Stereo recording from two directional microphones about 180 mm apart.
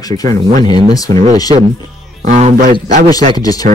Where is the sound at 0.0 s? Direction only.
20° left (ahead or behind).